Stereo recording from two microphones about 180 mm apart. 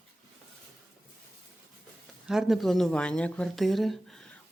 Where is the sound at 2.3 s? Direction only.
Centre (ahead or behind).